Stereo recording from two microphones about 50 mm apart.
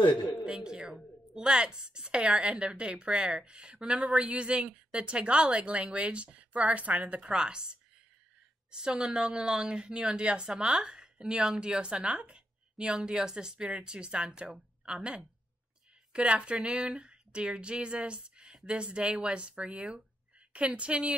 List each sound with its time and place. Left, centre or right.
0.5 s a woman's voice: centre